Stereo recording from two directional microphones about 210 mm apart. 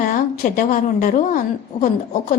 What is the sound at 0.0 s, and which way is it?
A woman's voice, 40° left (ahead or behind).